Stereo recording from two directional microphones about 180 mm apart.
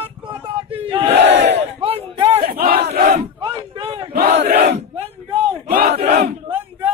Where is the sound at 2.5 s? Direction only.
55° right (ahead or behind).